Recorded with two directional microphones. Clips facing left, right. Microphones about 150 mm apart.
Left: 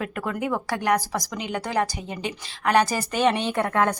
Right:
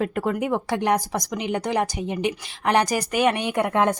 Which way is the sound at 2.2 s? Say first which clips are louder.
Even; 20° right (ahead or behind).